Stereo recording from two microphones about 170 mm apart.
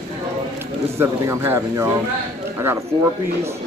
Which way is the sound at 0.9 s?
15° right (ahead or behind).